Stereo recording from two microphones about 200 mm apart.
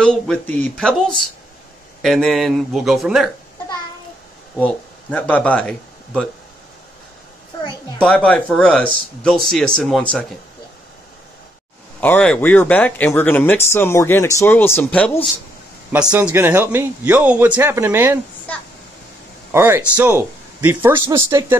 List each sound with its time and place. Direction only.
0.0 s speech: 5° left (ahead or behind)
4.6 s speech: 5° left (ahead or behind)
8.0 s speech: 5° left (ahead or behind)
12.0 s speech: 5° left (ahead or behind)
15.9 s a man's voice: 5° right (ahead or behind)
19.5 s a man's voice: 10° right (ahead or behind)